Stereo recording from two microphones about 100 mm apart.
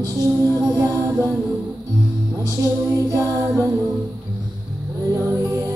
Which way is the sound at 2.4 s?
35° right (ahead or behind).